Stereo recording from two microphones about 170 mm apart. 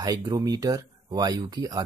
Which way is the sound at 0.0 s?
20° right (ahead or behind).